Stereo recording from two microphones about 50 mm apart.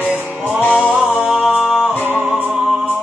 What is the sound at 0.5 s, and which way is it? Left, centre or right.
Music, right.